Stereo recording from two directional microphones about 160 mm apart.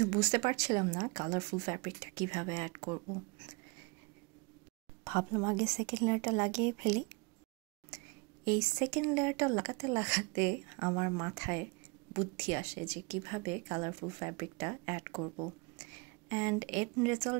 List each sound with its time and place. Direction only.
0.0 s speech: 20° right (ahead or behind)
5.0 s speech: 15° right (ahead or behind)
7.9 s a sound: 15° right (ahead or behind)
8.5 s speech: 15° right (ahead or behind)